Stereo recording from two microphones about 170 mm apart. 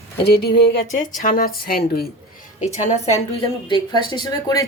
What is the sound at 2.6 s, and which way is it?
Speech, 40° left (ahead or behind).